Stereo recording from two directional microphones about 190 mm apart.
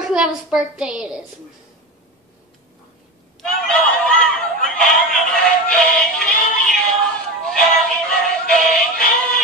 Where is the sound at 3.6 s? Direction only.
5° left (ahead or behind).